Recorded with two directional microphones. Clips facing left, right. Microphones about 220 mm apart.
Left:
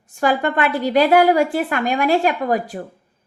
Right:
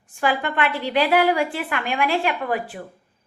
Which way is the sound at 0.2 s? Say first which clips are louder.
Left 4 dB; 40° left (ahead or behind).